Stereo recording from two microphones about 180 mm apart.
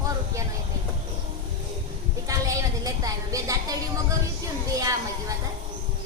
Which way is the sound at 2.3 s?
20° right (ahead or behind).